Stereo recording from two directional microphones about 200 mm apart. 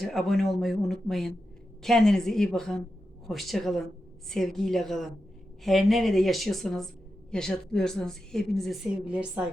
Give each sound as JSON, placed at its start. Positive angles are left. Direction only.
{"t": 0.0, "sound": "a woman's voice", "side_deg": 0}